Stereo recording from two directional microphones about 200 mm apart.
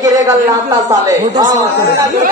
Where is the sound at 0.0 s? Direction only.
15° right (ahead or behind).